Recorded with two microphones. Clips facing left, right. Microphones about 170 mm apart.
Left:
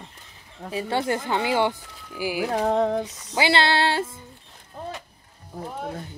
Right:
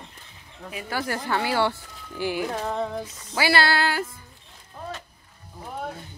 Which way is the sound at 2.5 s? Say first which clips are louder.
Left 6 dB; 70° left (ahead or behind).